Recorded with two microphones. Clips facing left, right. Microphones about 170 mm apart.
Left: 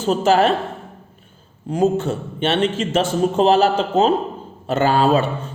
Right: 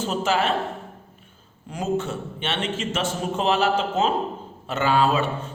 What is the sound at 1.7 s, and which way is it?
Speech, 30° left (ahead or behind).